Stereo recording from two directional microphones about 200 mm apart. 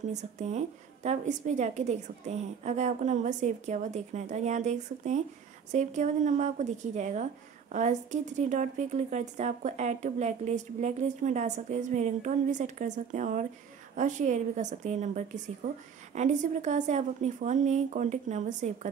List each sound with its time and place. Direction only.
0.1 s a woman's voice: 35° right (ahead or behind)